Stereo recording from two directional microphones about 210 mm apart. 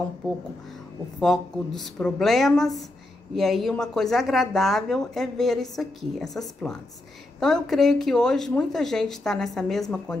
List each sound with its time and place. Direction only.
1.2 s speech: centre (ahead or behind)